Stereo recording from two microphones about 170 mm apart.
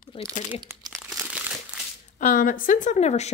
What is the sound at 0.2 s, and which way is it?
Speech, 35° left (ahead or behind).